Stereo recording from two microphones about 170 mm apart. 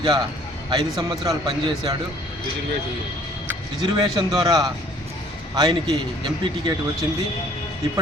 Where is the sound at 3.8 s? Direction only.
30° right (ahead or behind).